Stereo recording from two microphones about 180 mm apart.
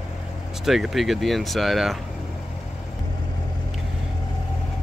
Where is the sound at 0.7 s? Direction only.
Centre (ahead or behind).